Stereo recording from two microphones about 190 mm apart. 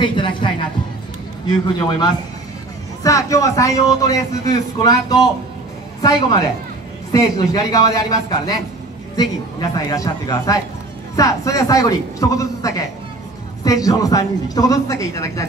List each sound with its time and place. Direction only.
0.0 s speech: 25° left (ahead or behind)
1.7 s a man's voice: 20° left (ahead or behind)
6.0 s a man's voice: 20° left (ahead or behind)